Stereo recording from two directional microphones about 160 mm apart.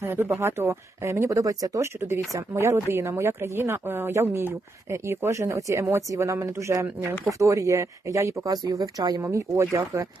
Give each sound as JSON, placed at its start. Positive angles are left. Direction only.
{"t": 0.0, "sound": "speech", "side_deg": -15}